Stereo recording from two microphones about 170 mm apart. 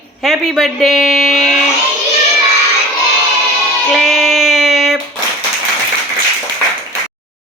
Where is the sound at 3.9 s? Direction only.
Centre (ahead or behind).